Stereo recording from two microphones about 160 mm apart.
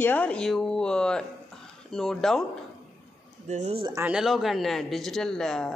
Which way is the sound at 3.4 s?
45° right (ahead or behind).